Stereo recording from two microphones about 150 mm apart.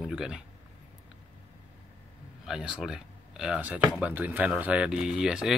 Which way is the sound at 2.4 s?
5° right (ahead or behind).